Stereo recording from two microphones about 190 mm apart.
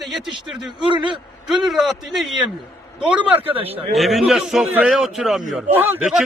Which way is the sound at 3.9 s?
Centre (ahead or behind).